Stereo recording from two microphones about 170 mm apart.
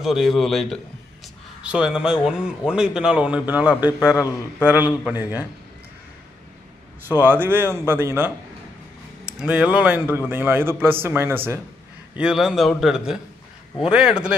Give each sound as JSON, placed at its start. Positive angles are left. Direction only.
{"t": 0.0, "sound": "speech", "side_deg": 0}
{"t": 4.0, "sound": "a man's voice", "side_deg": 15}
{"t": 5.0, "sound": "a man's voice", "side_deg": -10}
{"t": 7.1, "sound": "a man's voice", "side_deg": -10}
{"t": 9.4, "sound": "a man's voice", "side_deg": -5}